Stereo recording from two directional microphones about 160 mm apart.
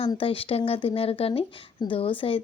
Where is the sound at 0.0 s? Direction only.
35° left (ahead or behind).